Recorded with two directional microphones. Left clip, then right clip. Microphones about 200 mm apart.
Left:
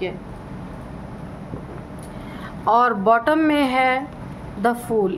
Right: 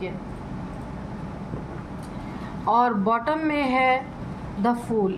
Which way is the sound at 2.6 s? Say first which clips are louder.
Left 4 dB; 35° left (ahead or behind).